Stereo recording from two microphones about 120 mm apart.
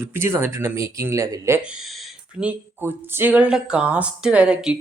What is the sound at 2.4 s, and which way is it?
Speech, 15° right (ahead or behind).